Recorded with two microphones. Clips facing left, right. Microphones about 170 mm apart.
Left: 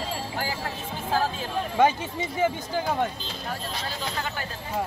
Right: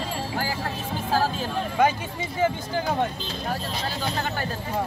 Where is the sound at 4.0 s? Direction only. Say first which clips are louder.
Right 5 dB; 40° right (ahead or behind).